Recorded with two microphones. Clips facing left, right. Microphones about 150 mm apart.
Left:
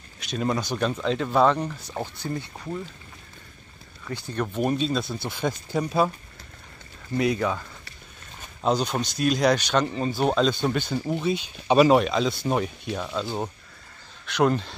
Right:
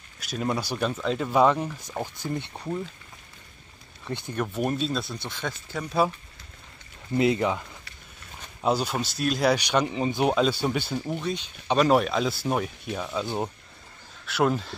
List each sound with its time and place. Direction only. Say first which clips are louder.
0.2 s speech: left 2 dB; 5° right (ahead or behind)
4.3 s speech: left 2 dB; 5° right (ahead or behind); by 5.9 s 15° left (ahead or behind)
7.2 s speech: right 1 dB; 20° right (ahead or behind)
8.5 s speech: left 1 dB; 5° right (ahead or behind)
13.2 s speech: right 2 dB; 15° right (ahead or behind)
14.2 s speech: left 2 dB; 5° right (ahead or behind)